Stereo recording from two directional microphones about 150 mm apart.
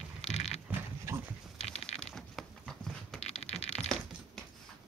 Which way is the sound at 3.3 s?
45° left (ahead or behind).